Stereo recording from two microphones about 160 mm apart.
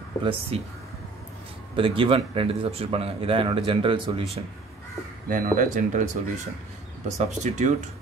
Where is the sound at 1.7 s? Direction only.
35° right (ahead or behind).